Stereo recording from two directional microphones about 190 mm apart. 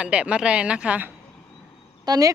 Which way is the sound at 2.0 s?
20° right (ahead or behind).